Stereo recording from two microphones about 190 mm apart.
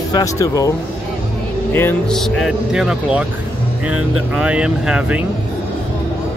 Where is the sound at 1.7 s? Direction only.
10° left (ahead or behind).